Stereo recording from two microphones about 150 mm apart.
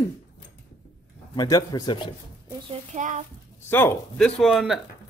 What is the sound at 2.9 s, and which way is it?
Speech, 55° right (ahead or behind).